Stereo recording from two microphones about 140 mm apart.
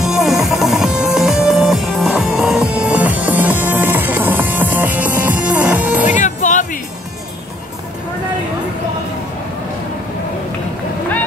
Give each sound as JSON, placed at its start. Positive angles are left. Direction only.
{"t": 0.0, "sound": "music", "side_deg": 0}
{"t": 6.1, "sound": "music", "side_deg": 60}